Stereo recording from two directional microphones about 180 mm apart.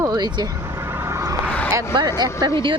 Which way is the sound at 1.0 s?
15° right (ahead or behind).